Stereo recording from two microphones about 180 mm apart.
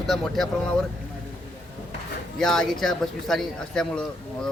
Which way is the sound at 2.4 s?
5° left (ahead or behind).